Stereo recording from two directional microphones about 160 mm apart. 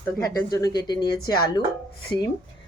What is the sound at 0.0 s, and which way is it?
Speech, 20° left (ahead or behind).